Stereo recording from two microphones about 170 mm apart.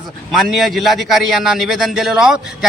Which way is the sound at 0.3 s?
Centre (ahead or behind).